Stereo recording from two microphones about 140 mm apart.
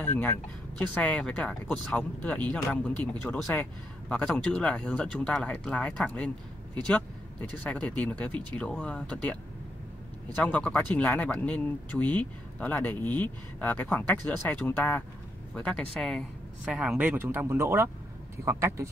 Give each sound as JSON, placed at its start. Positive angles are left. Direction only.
{"t": 0.0, "sound": "speech", "side_deg": 15}